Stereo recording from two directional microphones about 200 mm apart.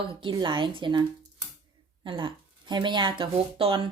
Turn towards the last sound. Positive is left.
turn(degrees=-25)  # may be behind; listen again after turning